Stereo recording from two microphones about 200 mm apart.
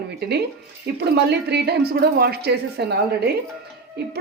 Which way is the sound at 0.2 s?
55° right (ahead or behind).